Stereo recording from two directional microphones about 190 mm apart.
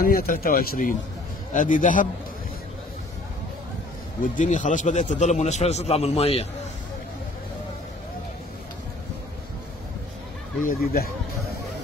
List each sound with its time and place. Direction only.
0.0 s speech: 50° left (ahead or behind)
4.2 s a man's voice: 40° left (ahead or behind)
10.8 s speech: 55° left (ahead or behind)